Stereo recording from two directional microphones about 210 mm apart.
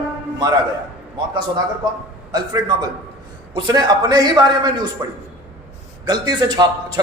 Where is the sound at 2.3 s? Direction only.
20° right (ahead or behind).